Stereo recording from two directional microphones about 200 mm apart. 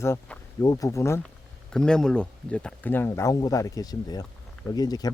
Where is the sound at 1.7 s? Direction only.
5° left (ahead or behind).